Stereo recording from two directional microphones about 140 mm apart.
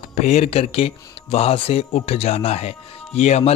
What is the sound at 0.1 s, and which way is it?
A man's voice, 55° left (ahead or behind).